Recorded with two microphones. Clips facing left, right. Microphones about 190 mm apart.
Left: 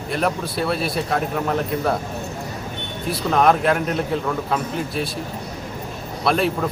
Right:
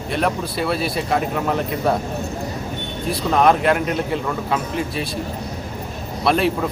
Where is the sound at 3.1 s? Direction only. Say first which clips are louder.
Right 1 dB; centre (ahead or behind).